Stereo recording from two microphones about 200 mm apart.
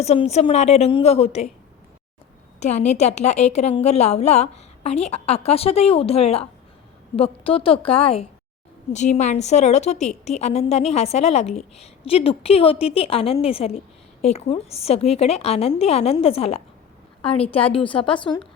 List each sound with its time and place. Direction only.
0.0 s a woman's voice: 35° left (ahead or behind)
2.6 s a woman's voice: 35° left (ahead or behind)